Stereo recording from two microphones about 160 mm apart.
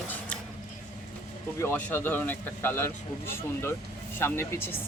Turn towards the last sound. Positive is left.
turn(degrees=15)  # may be behind; listen again after turning